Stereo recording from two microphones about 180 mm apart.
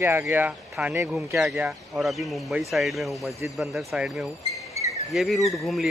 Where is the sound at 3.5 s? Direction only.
5° right (ahead or behind).